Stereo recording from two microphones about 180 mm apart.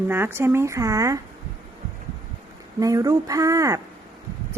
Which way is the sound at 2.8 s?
20° right (ahead or behind).